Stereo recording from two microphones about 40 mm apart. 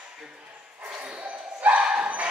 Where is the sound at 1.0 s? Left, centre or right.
Right.